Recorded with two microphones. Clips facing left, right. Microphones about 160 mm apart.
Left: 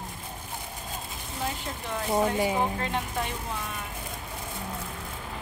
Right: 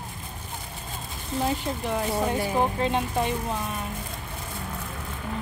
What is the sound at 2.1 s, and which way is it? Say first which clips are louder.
Speech: left 6 dB; 15° left (ahead or behind).